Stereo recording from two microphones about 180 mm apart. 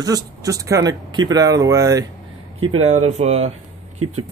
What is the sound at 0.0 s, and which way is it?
Speech, 20° right (ahead or behind).